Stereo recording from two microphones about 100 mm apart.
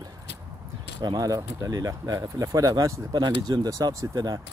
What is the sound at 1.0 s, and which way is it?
Speech, 40° right (ahead or behind).